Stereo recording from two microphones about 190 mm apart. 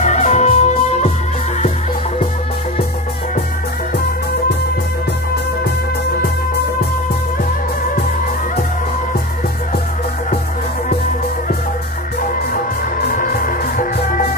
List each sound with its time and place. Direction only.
0.0 s music: 40° left (ahead or behind)
12.2 s music: 50° left (ahead or behind)